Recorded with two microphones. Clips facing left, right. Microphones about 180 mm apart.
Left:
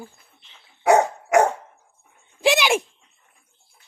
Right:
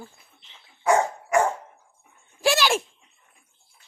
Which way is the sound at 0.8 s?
70° left (ahead or behind).